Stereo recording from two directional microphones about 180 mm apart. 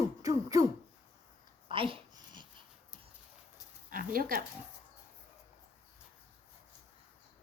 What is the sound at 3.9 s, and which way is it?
Speech, 50° right (ahead or behind).